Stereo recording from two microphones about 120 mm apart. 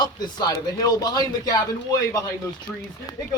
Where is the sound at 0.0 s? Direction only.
35° left (ahead or behind).